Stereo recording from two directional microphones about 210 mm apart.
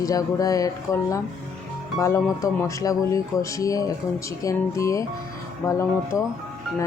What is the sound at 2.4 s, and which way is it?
Speech, 15° left (ahead or behind).